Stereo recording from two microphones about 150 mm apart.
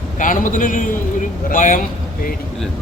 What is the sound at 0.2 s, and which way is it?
A man's voice, 60° left (ahead or behind).